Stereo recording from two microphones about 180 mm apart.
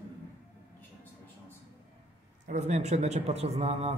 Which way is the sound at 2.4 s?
40° right (ahead or behind).